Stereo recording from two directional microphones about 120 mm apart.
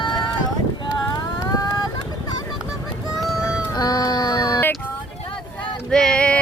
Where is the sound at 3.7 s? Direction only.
30° left (ahead or behind).